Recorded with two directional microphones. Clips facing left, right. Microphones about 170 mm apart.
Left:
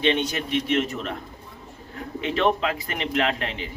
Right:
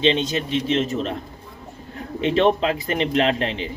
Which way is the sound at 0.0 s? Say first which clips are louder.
Right 3 dB; 25° right (ahead or behind).